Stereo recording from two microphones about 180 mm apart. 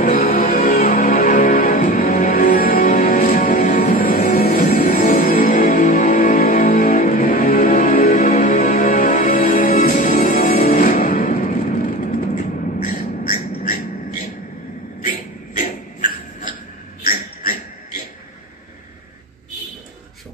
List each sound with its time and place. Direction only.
0.0 s music: 55° left (ahead or behind)
0.4 s music: 40° left (ahead or behind)
5.5 s music: 40° left (ahead or behind)
15.0 s a sound: 45° left (ahead or behind)